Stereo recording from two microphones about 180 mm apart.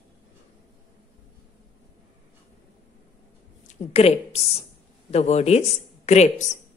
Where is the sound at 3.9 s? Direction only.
35° left (ahead or behind).